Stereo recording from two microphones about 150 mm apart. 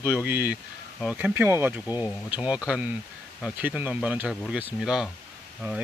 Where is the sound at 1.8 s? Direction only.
25° left (ahead or behind).